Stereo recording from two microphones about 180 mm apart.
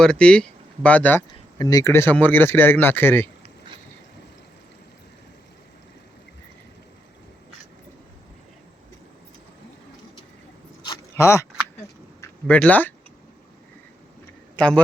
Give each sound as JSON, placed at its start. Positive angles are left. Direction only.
{"t": 0.0, "sound": "speech", "side_deg": 5}
{"t": 1.5, "sound": "speech", "side_deg": 20}
{"t": 10.8, "sound": "a sound", "side_deg": 15}
{"t": 12.2, "sound": "speech", "side_deg": 10}